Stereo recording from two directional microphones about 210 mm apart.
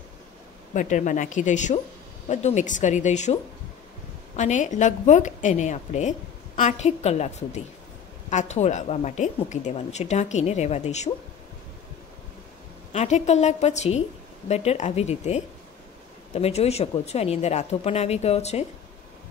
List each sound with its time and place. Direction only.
0.7 s a woman's voice: 35° left (ahead or behind)
4.4 s a woman's voice: 35° left (ahead or behind)
12.9 s a woman's voice: 35° left (ahead or behind)